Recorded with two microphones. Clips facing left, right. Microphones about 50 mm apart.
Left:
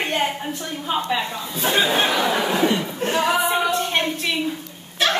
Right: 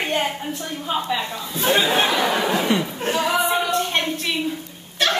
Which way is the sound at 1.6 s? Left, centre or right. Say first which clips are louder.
Right 1 dB; centre.